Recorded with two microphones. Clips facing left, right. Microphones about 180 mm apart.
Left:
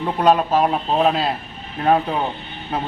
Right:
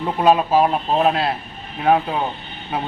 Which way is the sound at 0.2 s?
5° right (ahead or behind).